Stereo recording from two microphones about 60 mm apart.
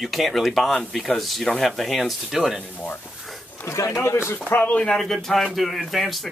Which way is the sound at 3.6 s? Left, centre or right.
Left.